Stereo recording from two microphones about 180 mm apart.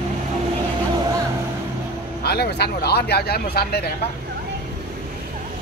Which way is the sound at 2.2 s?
60° left (ahead or behind).